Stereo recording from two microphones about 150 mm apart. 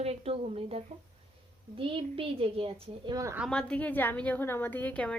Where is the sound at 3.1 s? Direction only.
20° right (ahead or behind).